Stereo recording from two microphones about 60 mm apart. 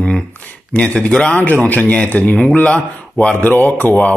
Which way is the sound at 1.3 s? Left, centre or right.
Left.